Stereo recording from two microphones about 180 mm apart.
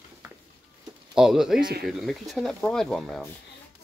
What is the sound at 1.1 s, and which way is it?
Speech, centre (ahead or behind).